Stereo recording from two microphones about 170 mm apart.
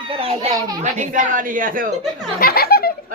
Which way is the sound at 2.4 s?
65° left (ahead or behind).